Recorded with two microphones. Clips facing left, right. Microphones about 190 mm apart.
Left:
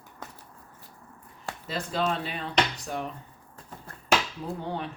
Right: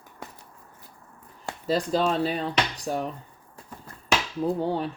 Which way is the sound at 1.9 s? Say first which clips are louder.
Right 2 dB; 35° right (ahead or behind).